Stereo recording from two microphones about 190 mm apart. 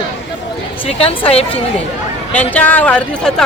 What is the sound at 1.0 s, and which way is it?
Speech, 30° left (ahead or behind).